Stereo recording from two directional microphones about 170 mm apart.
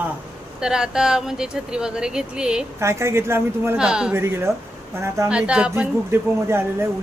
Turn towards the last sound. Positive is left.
turn(degrees=-15)  # may be behind; listen again after turning